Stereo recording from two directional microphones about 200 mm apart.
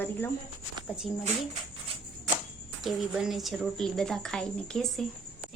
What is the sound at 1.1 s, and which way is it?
Speech, centre (ahead or behind).